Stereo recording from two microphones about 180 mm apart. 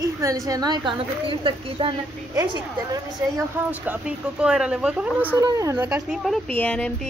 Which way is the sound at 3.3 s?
10° right (ahead or behind).